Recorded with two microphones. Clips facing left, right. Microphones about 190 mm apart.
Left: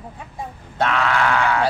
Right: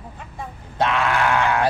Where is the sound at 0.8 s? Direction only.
15° right (ahead or behind).